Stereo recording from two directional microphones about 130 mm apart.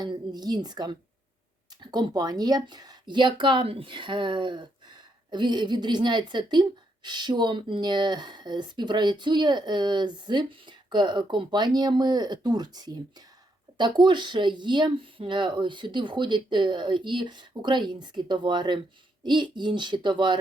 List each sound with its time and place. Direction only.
0.0 s speech: 35° right (ahead or behind)